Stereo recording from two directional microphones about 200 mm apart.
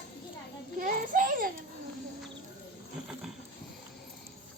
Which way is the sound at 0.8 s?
45° right (ahead or behind).